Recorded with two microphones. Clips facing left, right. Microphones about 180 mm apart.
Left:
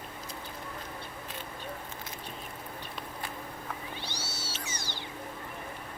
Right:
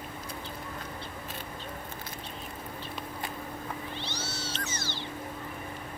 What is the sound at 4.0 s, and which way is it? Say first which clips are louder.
Cat: right 3 dB; 10° left (ahead or behind).